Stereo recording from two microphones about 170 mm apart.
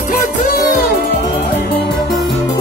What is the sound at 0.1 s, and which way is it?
Music, 55° left (ahead or behind).